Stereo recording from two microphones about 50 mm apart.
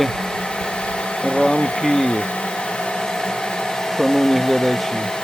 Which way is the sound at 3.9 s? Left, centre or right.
Centre.